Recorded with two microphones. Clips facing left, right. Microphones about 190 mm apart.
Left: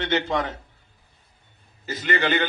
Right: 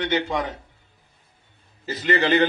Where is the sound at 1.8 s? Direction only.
30° right (ahead or behind).